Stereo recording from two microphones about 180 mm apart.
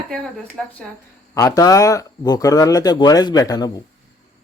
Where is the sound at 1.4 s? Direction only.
20° left (ahead or behind).